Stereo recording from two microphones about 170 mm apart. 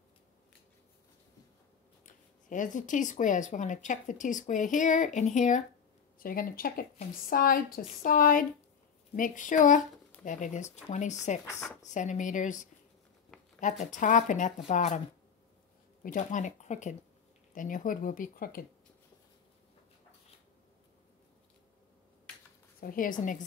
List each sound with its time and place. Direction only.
2.0 s speech: 50° left (ahead or behind)
6.1 s speech: 55° left (ahead or behind)
16.0 s speech: 50° left (ahead or behind)
22.8 s a woman's voice: 55° left (ahead or behind)